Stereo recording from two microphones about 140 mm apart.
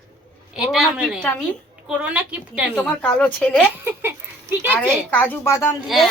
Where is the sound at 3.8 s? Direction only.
15° right (ahead or behind).